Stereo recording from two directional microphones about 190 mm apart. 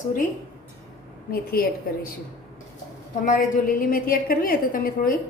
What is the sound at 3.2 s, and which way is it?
A woman's voice, 45° left (ahead or behind).